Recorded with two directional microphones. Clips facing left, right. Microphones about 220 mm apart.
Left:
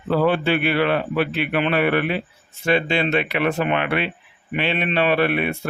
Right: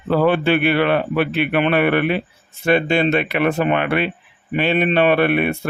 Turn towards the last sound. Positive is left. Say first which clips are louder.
# right 4 dB
turn(degrees=-55)  # may be behind; listen again after turning